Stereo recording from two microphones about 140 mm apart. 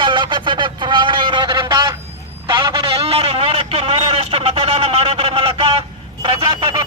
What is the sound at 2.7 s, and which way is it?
Speech, 40° right (ahead or behind).